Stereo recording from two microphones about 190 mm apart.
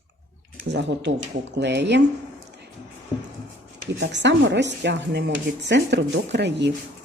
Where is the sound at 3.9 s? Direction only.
70° right (ahead or behind).